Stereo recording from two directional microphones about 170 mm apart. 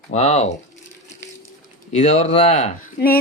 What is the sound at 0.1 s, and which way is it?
Speech, 40° left (ahead or behind).